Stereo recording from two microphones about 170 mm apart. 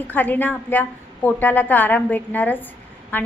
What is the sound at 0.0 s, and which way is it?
A woman's voice, 10° left (ahead or behind).